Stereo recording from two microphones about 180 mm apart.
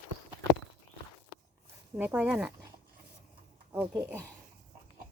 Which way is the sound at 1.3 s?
80° left.